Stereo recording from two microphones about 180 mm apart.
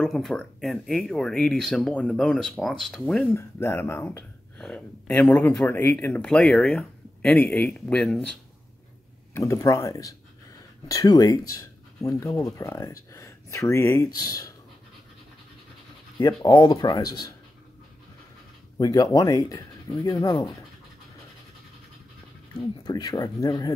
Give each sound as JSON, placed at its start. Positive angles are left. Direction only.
{"t": 0.0, "sound": "speech", "side_deg": 0}
{"t": 3.3, "sound": "speech", "side_deg": 15}
{"t": 9.3, "sound": "speech", "side_deg": 15}
{"t": 16.2, "sound": "speech", "side_deg": 20}
{"t": 18.8, "sound": "speech", "side_deg": 20}
{"t": 22.6, "sound": "speech", "side_deg": 20}